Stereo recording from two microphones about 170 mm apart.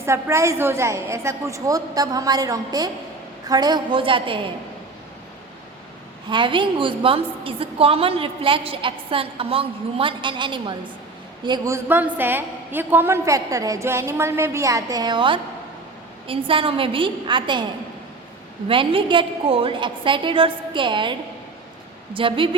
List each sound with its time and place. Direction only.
0.0 s a woman's voice: 15° right (ahead or behind)
6.2 s a woman's voice: 30° right (ahead or behind)
18.7 s a woman's voice: 30° right (ahead or behind)